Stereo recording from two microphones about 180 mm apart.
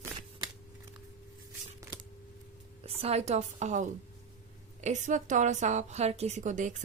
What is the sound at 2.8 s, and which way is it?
A woman's voice, 35° right (ahead or behind).